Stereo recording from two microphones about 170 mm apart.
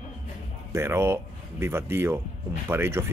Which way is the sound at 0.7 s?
15° right (ahead or behind).